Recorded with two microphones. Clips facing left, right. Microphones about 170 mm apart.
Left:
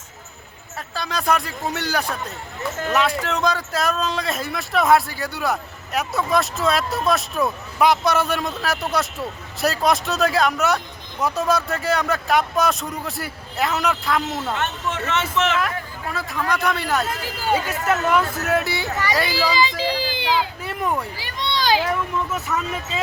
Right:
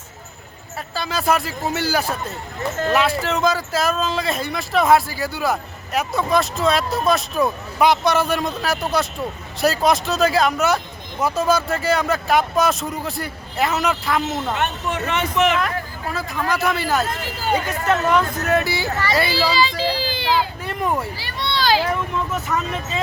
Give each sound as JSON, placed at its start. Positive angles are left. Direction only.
{"t": 0.9, "sound": "speech", "side_deg": -5}
{"t": 14.5, "sound": "speech", "side_deg": -15}
{"t": 16.1, "sound": "speech", "side_deg": 0}
{"t": 19.3, "sound": "a sound", "side_deg": 15}
{"t": 20.7, "sound": "speech", "side_deg": 0}
{"t": 21.2, "sound": "a sound", "side_deg": 15}
{"t": 22.3, "sound": "speech", "side_deg": 0}